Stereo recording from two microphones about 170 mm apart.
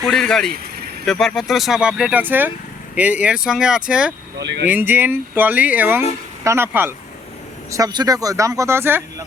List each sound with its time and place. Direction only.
0.0 s speech: 5° left (ahead or behind)
4.4 s speech: 90° right
4.7 s speech: 10° right (ahead or behind)